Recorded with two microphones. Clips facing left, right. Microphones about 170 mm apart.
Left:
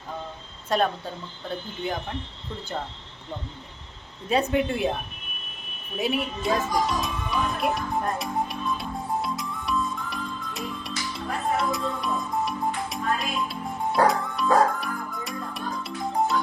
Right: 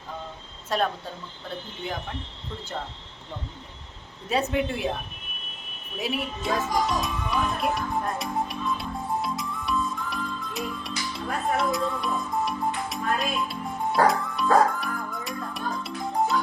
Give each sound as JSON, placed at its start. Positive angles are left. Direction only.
{"t": 0.7, "sound": "speech", "side_deg": 0}
{"t": 4.3, "sound": "speech", "side_deg": 0}
{"t": 6.0, "sound": "music", "side_deg": 0}